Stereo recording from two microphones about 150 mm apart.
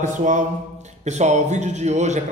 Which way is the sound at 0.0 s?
55° right (ahead or behind).